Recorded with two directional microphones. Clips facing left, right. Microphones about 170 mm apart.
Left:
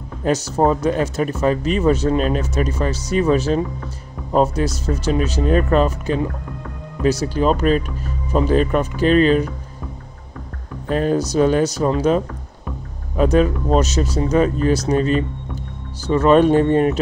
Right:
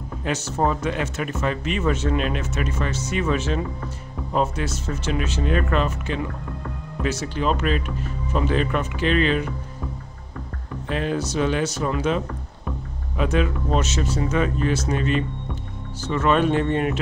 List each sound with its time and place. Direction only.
0.2 s speech: 40° left (ahead or behind)
10.9 s speech: 40° left (ahead or behind)